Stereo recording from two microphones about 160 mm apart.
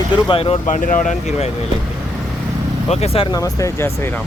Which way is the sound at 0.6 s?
55° left (ahead or behind).